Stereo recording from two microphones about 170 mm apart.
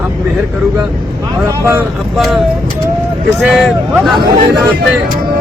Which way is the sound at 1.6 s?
15° right (ahead or behind).